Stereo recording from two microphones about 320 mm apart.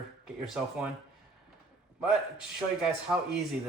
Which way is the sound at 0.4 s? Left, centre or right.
Centre.